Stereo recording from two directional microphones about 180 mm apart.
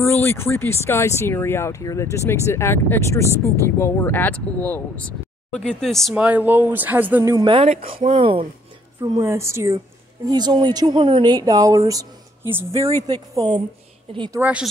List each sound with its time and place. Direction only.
0.0 s speech: 10° left (ahead or behind); by 7.3 s 10° right (ahead or behind)
7.3 s speech: 30° right (ahead or behind)
9.0 s speech: 15° right (ahead or behind)
14.4 s speech: 5° right (ahead or behind)